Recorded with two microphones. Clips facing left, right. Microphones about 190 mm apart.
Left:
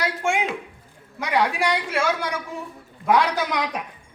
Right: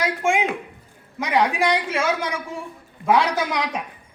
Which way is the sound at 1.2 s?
15° right (ahead or behind).